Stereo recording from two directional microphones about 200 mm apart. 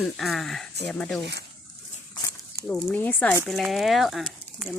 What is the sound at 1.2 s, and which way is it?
Speech, 60° right (ahead or behind).